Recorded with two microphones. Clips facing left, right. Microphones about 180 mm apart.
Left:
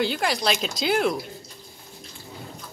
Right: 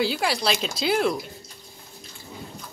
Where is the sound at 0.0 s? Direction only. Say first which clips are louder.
Even; centre (ahead or behind).